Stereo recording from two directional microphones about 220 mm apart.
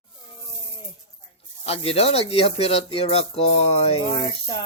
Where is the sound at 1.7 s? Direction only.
25° left (ahead or behind).